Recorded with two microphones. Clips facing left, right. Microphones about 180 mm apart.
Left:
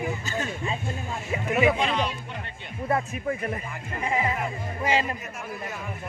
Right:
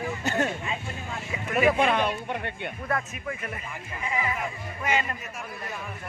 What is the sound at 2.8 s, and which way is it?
Speech, 30° left (ahead or behind).